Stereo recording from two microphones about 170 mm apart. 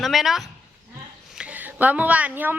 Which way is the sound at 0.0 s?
Centre (ahead or behind).